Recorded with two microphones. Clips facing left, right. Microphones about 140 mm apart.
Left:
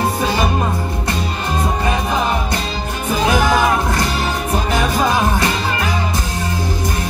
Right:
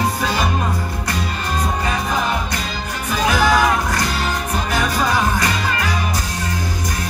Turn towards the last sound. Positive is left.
turn(degrees=25)  # may be behind; listen again after turning